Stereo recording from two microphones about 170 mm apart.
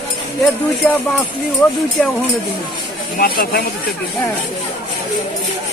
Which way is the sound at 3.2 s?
60° left (ahead or behind).